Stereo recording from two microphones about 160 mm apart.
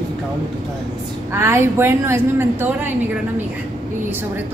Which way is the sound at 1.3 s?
15° right (ahead or behind).